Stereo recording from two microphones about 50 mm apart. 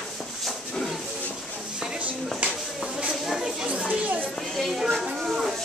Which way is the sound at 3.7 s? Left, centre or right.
Right.